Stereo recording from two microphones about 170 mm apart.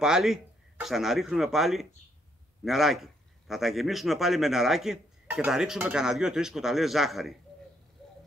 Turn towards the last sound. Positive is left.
turn(degrees=0)  # may be behind; listen again after turning